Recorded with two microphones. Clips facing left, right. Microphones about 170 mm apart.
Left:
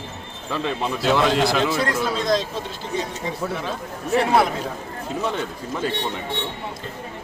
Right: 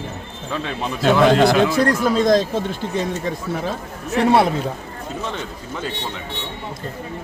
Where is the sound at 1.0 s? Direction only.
55° right (ahead or behind).